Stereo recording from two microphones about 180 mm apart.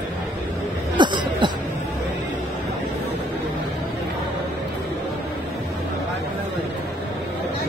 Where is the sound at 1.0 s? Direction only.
25° right (ahead or behind).